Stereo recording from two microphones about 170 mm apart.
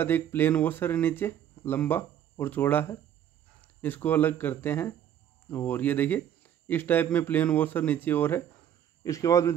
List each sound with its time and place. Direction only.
0.0 s speech: 10° left (ahead or behind)